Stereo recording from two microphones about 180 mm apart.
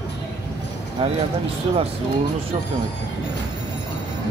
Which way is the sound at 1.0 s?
30° right (ahead or behind).